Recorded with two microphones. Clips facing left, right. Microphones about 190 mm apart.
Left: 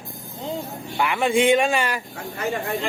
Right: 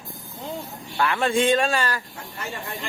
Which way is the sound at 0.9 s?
15° left (ahead or behind).